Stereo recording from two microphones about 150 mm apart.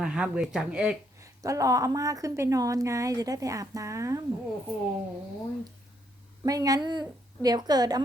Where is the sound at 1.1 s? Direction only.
20° right (ahead or behind).